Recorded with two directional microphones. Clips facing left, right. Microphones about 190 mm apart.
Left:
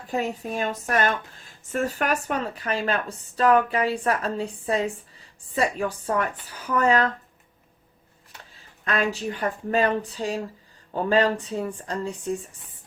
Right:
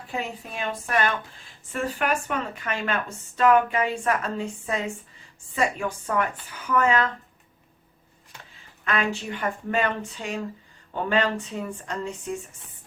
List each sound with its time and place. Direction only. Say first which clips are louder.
0.1 s speech: left 5 dB; 45° left (ahead or behind)
8.8 s speech: left 2 dB; 35° left (ahead or behind)